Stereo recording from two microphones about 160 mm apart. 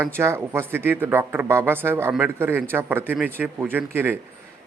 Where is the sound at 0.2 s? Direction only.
15° right (ahead or behind).